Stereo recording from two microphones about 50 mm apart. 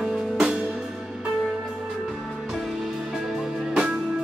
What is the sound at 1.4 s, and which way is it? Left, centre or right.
Music, centre.